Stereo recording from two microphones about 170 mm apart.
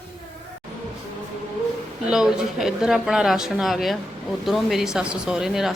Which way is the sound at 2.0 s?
5° right (ahead or behind).